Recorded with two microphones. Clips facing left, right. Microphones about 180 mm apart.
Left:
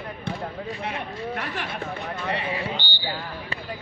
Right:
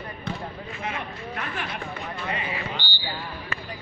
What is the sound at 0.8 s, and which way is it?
Speech, 60° left (ahead or behind).